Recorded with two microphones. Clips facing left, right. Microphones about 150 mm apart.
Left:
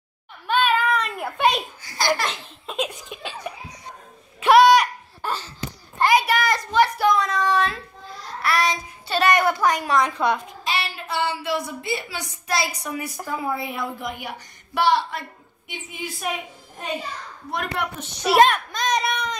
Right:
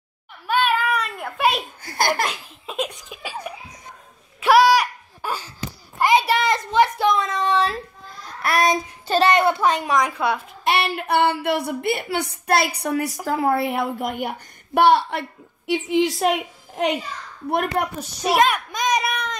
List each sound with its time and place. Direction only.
0.5 s a sound: 10° right (ahead or behind)
1.1 s a child's voice: centre (ahead or behind)
1.8 s a woman's voice: 55° right (ahead or behind)
2.2 s laughter: 5° right (ahead or behind)
4.4 s a sound: 5° right (ahead or behind)
6.1 s child singing: 25° right (ahead or behind)
8.4 s child singing: 50° right (ahead or behind)
9.2 s a child's voice: 25° right (ahead or behind)
9.9 s a child's voice: 10° right (ahead or behind)
10.6 s a woman's voice: 60° right (ahead or behind); by 17.0 s 80° right
17.5 s a woman's voice: 55° right (ahead or behind)
18.5 s a child's voice: 10° right (ahead or behind)